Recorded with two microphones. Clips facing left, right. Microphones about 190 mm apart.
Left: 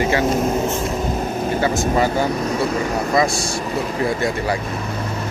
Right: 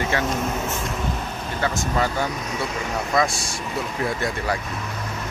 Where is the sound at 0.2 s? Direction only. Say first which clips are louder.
Left 7 dB; 35° left (ahead or behind).